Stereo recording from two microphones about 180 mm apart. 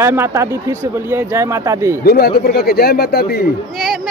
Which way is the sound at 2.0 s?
60° left (ahead or behind).